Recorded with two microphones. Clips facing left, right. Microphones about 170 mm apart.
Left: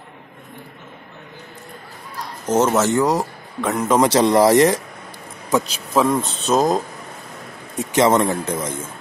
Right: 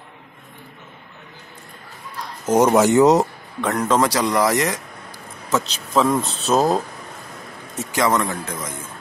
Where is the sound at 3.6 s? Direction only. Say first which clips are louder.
Left 1 dB; 5° left (ahead or behind).